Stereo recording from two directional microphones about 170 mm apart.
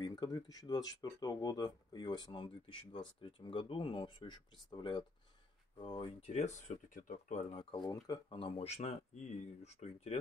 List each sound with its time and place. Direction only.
0.0 s speech: 20° left (ahead or behind); by 7.6 s 40° left (ahead or behind)
7.7 s speech: 20° left (ahead or behind); by 10.1 s 40° left (ahead or behind)